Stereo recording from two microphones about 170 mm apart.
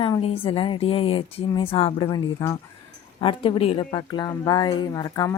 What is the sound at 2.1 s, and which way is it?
Speech, 20° left (ahead or behind).